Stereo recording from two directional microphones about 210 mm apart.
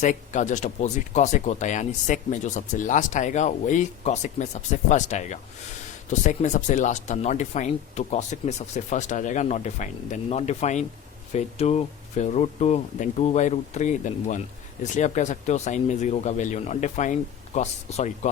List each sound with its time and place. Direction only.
0.0 s speech: 35° left (ahead or behind)